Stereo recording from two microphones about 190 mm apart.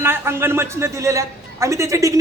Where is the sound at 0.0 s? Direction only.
10° right (ahead or behind).